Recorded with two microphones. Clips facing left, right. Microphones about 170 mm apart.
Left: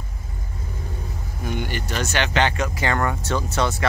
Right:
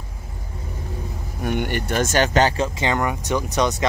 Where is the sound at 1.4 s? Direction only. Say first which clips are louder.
Right 4 dB; 60° right (ahead or behind); by 2.7 s 35° right (ahead or behind).